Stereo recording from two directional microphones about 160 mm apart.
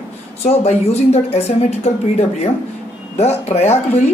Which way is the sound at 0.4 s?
40° left (ahead or behind).